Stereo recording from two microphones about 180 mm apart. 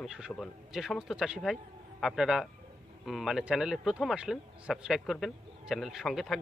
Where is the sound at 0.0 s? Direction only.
5° right (ahead or behind).